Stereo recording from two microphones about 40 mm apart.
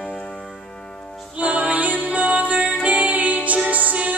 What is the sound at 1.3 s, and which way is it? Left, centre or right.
Music, right.